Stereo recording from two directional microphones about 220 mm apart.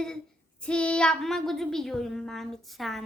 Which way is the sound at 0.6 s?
5° left (ahead or behind).